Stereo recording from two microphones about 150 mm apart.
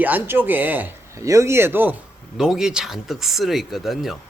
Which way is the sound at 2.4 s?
5° right (ahead or behind).